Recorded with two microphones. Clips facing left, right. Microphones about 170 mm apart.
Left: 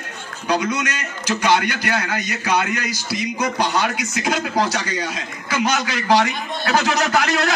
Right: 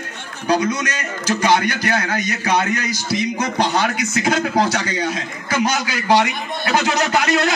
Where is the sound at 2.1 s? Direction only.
20° right (ahead or behind).